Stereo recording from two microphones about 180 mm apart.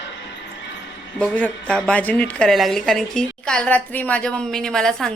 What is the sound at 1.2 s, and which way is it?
A woman's voice, 5° left (ahead or behind).